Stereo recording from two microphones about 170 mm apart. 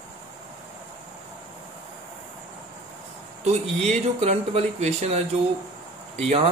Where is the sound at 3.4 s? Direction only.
40° right (ahead or behind).